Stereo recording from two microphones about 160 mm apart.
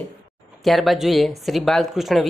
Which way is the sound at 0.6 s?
Centre (ahead or behind).